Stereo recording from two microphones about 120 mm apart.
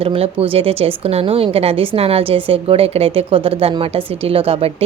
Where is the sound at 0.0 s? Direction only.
50° right (ahead or behind).